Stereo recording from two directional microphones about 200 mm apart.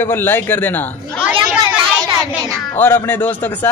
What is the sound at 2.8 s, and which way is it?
Speech, 10° left (ahead or behind).